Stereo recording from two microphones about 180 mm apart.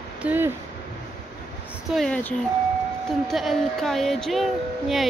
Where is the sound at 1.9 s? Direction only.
5° left (ahead or behind).